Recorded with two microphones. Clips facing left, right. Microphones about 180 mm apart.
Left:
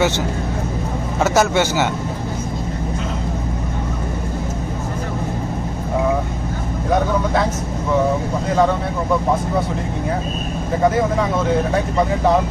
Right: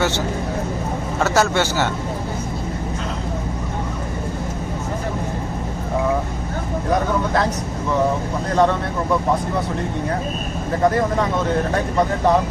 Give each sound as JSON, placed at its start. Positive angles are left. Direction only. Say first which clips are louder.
{"t": 1.2, "sound": "speech", "louder": "left 2 dB", "side_deg": 15}
{"t": 8.4, "sound": "speech", "louder": "even", "side_deg": 0}
{"t": 10.8, "sound": "speech", "louder": "left 1 dB", "side_deg": 0}